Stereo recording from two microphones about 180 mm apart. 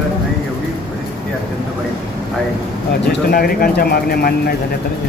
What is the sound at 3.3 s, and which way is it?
Speech, 55° left (ahead or behind).